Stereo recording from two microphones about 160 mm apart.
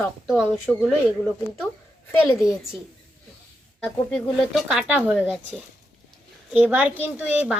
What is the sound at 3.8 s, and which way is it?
A woman's voice, 5° left (ahead or behind).